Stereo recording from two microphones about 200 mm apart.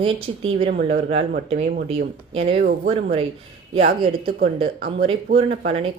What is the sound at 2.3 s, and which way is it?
Speech, 30° right (ahead or behind).